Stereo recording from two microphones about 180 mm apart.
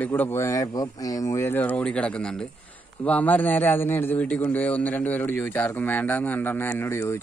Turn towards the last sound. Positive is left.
turn(degrees=15)  # may be behind; listen again after turning